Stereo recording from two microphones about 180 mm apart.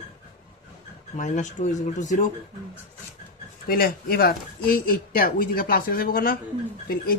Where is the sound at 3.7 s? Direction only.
55° left (ahead or behind).